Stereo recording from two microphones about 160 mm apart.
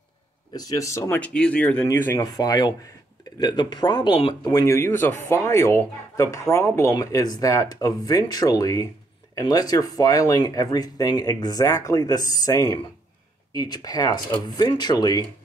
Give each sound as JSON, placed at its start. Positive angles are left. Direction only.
{"t": 0.5, "sound": "speech", "side_deg": 25}
{"t": 2.3, "sound": "speech", "side_deg": 25}